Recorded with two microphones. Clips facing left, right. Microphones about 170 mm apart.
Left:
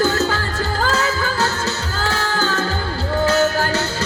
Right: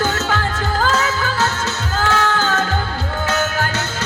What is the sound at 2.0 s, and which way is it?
Music, 35° left (ahead or behind).